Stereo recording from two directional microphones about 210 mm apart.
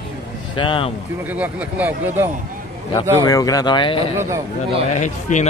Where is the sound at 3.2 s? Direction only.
15° left (ahead or behind).